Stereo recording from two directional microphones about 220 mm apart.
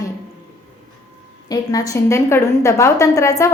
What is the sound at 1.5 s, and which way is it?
A woman's voice, 15° left (ahead or behind).